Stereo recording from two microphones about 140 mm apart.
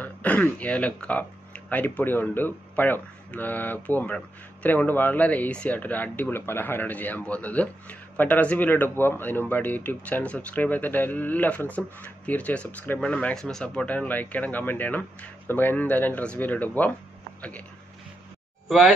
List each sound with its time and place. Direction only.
0.0 s speech: 10° left (ahead or behind)
18.7 s speech: 5° right (ahead or behind)